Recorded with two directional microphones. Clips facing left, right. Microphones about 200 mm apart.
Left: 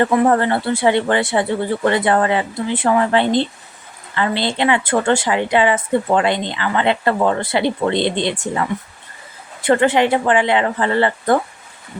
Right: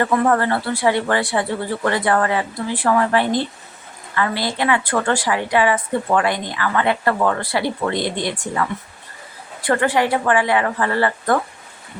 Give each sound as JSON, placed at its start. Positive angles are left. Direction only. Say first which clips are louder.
{"t": 0.0, "sound": "speech", "louder": "left 3 dB", "side_deg": 20}